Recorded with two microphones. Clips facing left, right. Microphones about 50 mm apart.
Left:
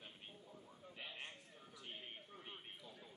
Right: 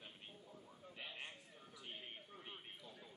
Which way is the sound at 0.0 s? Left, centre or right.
Centre.